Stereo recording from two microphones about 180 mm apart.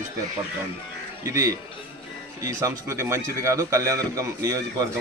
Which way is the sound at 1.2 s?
15° right (ahead or behind).